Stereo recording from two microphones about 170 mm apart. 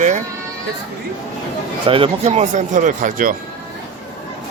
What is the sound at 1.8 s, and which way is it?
Speech, 30° right (ahead or behind).